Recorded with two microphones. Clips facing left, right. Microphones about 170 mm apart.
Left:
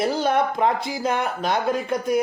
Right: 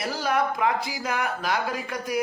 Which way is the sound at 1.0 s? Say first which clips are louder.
Left 6 dB; 30° left (ahead or behind).